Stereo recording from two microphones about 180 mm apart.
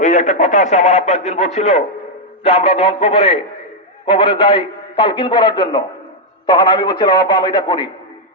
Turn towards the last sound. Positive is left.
turn(degrees=25)  # may be behind; listen again after turning